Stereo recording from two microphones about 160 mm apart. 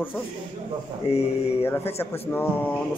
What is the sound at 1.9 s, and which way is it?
Speech, 15° left (ahead or behind).